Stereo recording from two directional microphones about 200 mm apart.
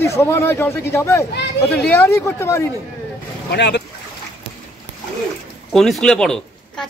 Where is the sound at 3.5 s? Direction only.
60° left (ahead or behind).